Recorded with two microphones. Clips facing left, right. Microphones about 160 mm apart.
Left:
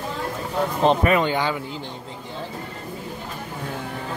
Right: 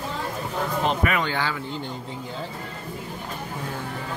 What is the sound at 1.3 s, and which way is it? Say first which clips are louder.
Speech: left 4 dB; 20° left (ahead or behind).